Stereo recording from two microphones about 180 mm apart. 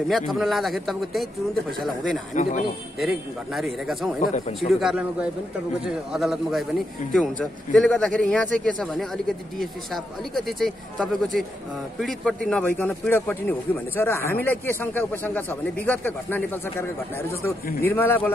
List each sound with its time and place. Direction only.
0.1 s a man's voice: centre (ahead or behind)
2.3 s a man's voice: 40° left (ahead or behind)
3.0 s a man's voice: centre (ahead or behind)
10.3 s a man's voice: centre (ahead or behind)
17.8 s a man's voice: 10° left (ahead or behind)